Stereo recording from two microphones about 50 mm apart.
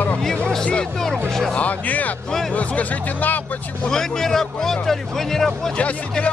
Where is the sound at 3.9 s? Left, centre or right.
Centre.